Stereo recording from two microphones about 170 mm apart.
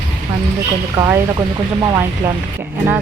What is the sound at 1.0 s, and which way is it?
Speech, 15° right (ahead or behind).